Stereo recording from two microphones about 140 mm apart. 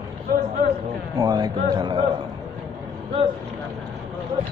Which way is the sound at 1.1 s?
25° right (ahead or behind).